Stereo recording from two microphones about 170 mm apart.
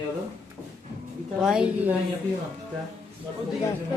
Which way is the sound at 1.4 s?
5° right (ahead or behind).